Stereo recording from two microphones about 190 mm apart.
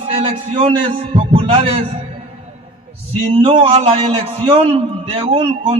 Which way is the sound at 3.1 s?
30° right (ahead or behind).